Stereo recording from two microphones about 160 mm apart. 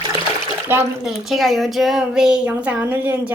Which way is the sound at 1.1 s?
Centre (ahead or behind).